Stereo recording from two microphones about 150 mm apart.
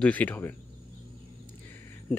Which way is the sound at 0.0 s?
10° left (ahead or behind).